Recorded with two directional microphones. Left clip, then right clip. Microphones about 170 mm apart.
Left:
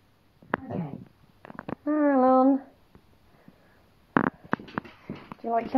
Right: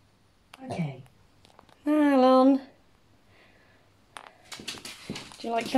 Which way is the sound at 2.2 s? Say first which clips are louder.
Right 1 dB; 15° right (ahead or behind).